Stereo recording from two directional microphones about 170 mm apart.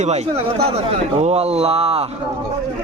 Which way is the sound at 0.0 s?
40° right (ahead or behind).